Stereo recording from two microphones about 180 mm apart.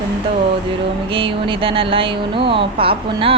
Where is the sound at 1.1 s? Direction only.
30° right (ahead or behind).